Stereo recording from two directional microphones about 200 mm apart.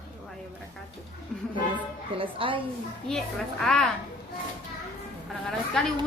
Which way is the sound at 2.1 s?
25° right (ahead or behind).